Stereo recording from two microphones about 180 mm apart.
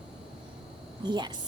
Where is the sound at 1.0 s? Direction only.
25° right (ahead or behind).